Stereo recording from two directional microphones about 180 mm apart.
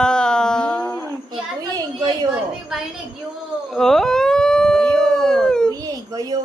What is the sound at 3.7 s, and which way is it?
Howl, centre (ahead or behind).